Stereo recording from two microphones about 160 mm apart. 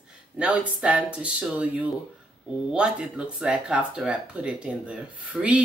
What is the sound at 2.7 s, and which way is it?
Speech, 5° right (ahead or behind).